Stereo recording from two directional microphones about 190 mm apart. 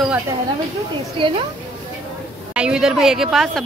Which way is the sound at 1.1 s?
25° right (ahead or behind).